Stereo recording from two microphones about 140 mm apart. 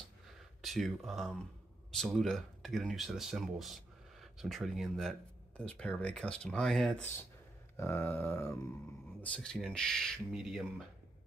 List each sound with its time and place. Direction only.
0.6 s speech: centre (ahead or behind)
7.7 s speech: 15° left (ahead or behind); by 10.7 s 5° right (ahead or behind)